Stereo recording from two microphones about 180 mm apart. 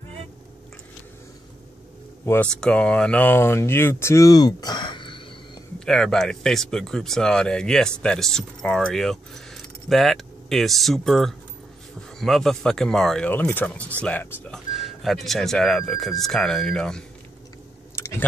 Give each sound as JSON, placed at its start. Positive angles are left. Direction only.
{"t": 2.2, "sound": "speech", "side_deg": 10}
{"t": 5.9, "sound": "speech", "side_deg": 5}
{"t": 17.9, "sound": "a sound", "side_deg": 15}